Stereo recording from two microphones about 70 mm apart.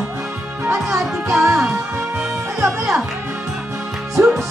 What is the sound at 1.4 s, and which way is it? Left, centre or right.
Music, right.